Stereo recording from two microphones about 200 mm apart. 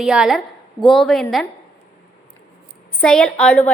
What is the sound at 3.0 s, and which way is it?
Speech, 5° left (ahead or behind).